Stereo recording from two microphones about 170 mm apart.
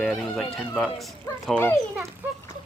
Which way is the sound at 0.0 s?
Centre (ahead or behind).